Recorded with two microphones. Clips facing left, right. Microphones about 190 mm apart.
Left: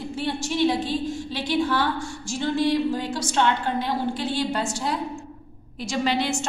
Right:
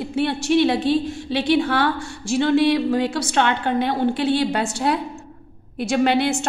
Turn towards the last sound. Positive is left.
turn(degrees=-60)  # may be behind; listen again after turning